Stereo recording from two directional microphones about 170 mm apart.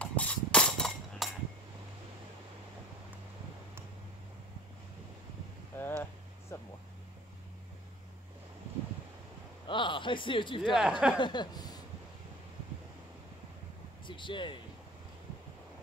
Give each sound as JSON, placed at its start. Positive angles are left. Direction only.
{"t": 0.0, "sound": "a sound", "side_deg": 10}
{"t": 5.8, "sound": "a sound", "side_deg": 10}
{"t": 9.7, "sound": "speech", "side_deg": 30}
{"t": 10.6, "sound": "speech", "side_deg": 0}
{"t": 11.1, "sound": "speech", "side_deg": 25}
{"t": 14.0, "sound": "speech", "side_deg": 30}